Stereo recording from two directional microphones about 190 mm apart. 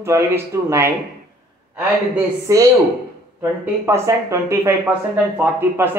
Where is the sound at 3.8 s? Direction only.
15° right (ahead or behind).